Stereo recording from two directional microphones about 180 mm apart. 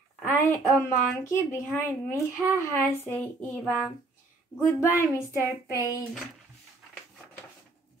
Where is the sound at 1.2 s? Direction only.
15° left (ahead or behind).